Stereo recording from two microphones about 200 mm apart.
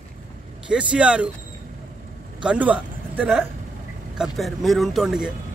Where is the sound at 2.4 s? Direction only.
5° right (ahead or behind).